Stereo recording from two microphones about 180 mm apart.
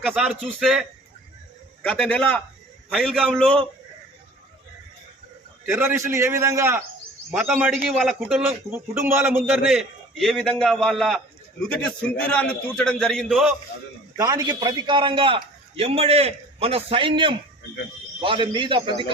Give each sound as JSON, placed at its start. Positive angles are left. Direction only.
{"t": 0.0, "sound": "a man's voice", "side_deg": -5}
{"t": 5.6, "sound": "a man's voice", "side_deg": -15}
{"t": 7.3, "sound": "a man's voice", "side_deg": -5}
{"t": 8.7, "sound": "a man's voice", "side_deg": -15}
{"t": 9.6, "sound": "a man's voice", "side_deg": 0}
{"t": 14.2, "sound": "a man's voice", "side_deg": -20}